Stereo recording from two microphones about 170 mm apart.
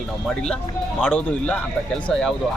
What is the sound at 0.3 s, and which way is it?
Speech, 5° left (ahead or behind).